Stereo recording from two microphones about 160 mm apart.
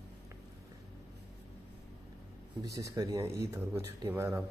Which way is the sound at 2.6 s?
20° right (ahead or behind).